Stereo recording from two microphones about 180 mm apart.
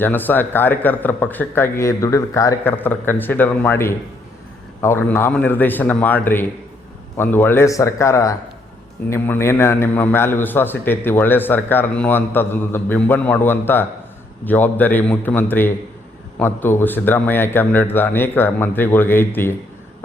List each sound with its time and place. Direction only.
0.0 s a man's voice: 10° left (ahead or behind)